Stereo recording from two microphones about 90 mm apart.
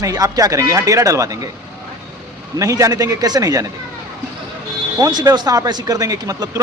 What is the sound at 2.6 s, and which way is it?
Speech, 35° right (ahead or behind).